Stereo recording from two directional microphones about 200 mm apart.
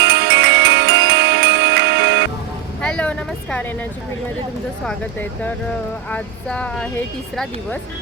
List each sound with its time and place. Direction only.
0.0 s music: 55° right (ahead or behind)
2.8 s vehicle: 5° left (ahead or behind)
6.1 s speech: 5° left (ahead or behind)